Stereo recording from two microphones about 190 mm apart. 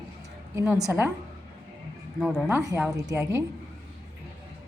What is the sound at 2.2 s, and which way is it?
Speech, 50° right (ahead or behind).